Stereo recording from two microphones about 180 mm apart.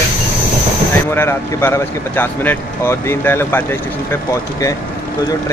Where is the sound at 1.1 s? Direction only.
15° left (ahead or behind).